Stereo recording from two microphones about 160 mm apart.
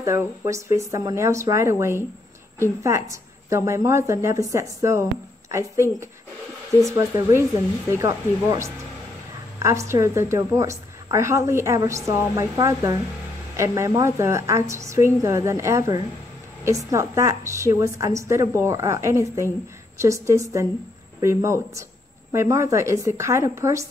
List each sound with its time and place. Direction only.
0.0 s a woman's voice: 20° right (ahead or behind)